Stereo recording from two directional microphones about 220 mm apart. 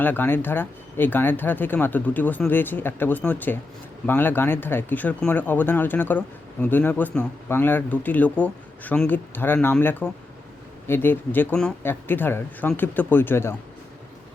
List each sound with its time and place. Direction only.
0.0 s speech: 10° left (ahead or behind)